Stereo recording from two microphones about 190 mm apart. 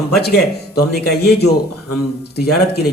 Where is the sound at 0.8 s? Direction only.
60° left (ahead or behind).